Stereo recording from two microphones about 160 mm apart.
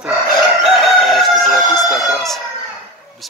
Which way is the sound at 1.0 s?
Centre (ahead or behind).